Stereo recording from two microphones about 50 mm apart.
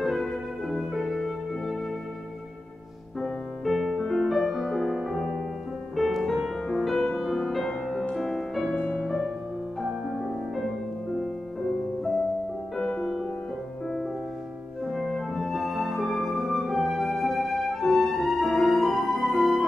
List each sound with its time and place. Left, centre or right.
0.0 s music: centre
3.2 s music: centre
5.9 s music: centre
9.8 s music: centre
12.7 s music: centre
14.9 s music: centre